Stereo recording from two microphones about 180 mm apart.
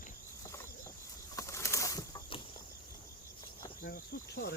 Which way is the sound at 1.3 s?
15° left (ahead or behind).